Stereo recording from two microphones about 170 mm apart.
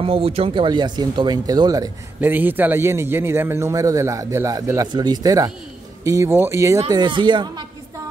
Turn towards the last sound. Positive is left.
turn(degrees=-25)  # may be behind; listen again after turning